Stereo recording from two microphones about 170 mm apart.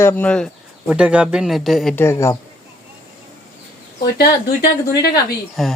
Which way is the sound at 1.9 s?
15° left (ahead or behind).